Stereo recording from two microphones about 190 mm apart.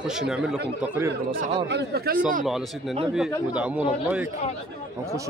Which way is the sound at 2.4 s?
Centre (ahead or behind).